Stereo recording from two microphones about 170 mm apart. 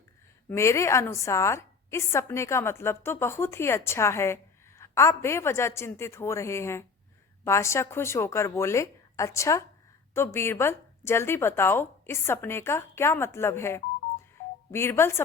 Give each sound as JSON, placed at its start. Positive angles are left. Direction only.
{"t": 0.4, "sound": "a woman's voice", "side_deg": 15}